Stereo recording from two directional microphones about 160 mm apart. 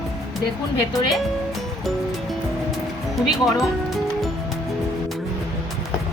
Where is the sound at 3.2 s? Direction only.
Centre (ahead or behind).